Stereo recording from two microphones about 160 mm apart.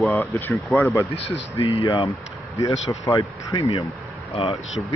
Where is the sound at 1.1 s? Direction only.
40° left (ahead or behind).